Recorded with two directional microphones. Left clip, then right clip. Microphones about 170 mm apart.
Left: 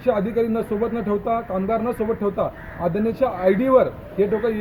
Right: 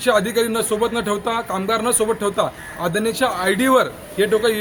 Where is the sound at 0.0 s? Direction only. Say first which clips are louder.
Right 3 dB; 20° right (ahead or behind).